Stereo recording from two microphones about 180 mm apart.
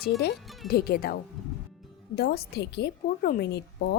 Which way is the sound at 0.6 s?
60° left (ahead or behind).